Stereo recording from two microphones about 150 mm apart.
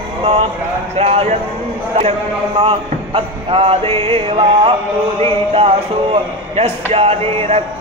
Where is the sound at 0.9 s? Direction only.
45° right (ahead or behind).